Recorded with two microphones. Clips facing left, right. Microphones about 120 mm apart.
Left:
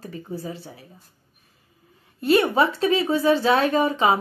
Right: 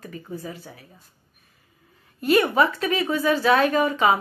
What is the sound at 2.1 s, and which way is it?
Speech, 30° left (ahead or behind).